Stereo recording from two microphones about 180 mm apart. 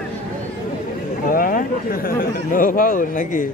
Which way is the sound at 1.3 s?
50° left (ahead or behind).